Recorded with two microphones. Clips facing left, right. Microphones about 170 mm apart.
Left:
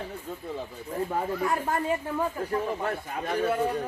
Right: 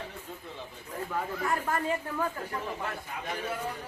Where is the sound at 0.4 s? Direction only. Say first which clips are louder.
Left 8 dB; 40° left (ahead or behind).